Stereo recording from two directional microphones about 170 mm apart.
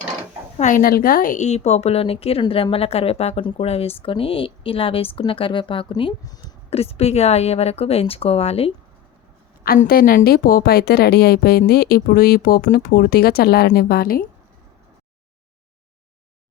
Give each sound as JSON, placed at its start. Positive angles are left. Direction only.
{"t": 0.6, "sound": "a woman's voice", "side_deg": 50}
{"t": 6.7, "sound": "a woman's voice", "side_deg": 35}
{"t": 9.6, "sound": "a woman's voice", "side_deg": 60}